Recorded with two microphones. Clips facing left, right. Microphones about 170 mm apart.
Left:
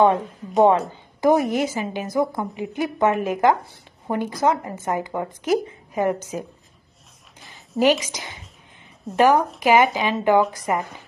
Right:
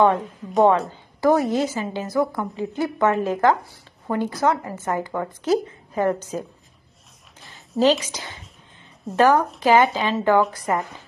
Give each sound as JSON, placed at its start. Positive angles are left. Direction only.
{"t": 0.7, "sound": "a woman's voice", "side_deg": 20}
{"t": 7.8, "sound": "a woman's voice", "side_deg": 15}